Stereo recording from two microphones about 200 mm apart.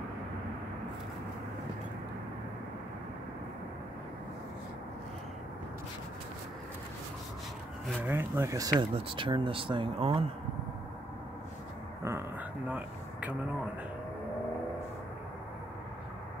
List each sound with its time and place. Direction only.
8.0 s speech: 10° right (ahead or behind)
8.7 s speech: 25° right (ahead or behind)
12.0 s a sound: 15° right (ahead or behind)